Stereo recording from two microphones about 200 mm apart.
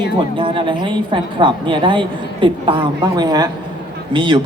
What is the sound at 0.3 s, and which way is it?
A man's voice, 25° right (ahead or behind).